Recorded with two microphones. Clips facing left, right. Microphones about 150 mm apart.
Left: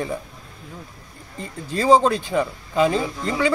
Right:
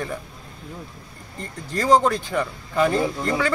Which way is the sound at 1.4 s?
10° left (ahead or behind).